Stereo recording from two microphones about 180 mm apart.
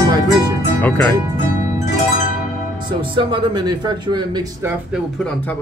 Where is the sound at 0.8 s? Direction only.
10° left (ahead or behind).